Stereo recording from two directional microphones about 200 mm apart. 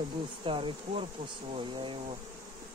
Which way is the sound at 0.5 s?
25° right (ahead or behind).